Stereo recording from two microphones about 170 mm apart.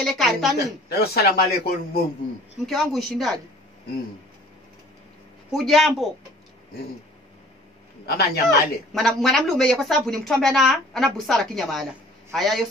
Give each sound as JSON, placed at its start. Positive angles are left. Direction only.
{"t": 0.0, "sound": "a woman's voice", "side_deg": 0}
{"t": 0.8, "sound": "speech", "side_deg": 70}
{"t": 2.6, "sound": "a woman's voice", "side_deg": 0}
{"t": 5.5, "sound": "a woman's voice", "side_deg": 0}
{"t": 8.0, "sound": "speech", "side_deg": 70}
{"t": 8.9, "sound": "a woman's voice", "side_deg": 0}